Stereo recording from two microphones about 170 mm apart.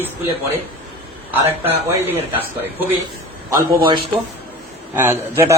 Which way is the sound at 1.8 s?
15° right (ahead or behind).